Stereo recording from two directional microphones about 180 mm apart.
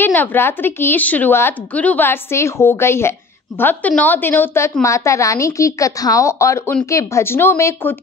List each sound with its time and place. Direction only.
0.0 s a woman's voice: 10° left (ahead or behind)